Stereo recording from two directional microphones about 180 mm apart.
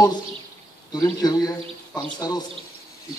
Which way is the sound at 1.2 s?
20° left (ahead or behind).